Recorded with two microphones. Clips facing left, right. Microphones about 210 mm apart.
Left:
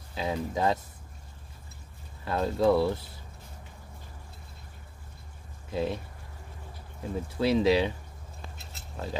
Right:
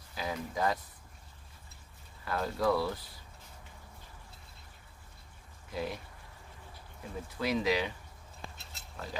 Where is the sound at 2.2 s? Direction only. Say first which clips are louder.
Left 6 dB; 25° left (ahead or behind).